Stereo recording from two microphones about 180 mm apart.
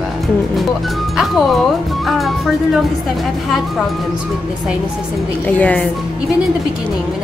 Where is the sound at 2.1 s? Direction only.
Centre (ahead or behind).